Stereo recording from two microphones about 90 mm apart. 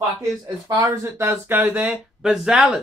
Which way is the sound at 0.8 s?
35° right (ahead or behind).